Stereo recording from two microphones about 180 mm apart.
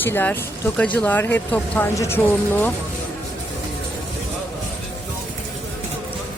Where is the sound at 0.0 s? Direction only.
10° left (ahead or behind).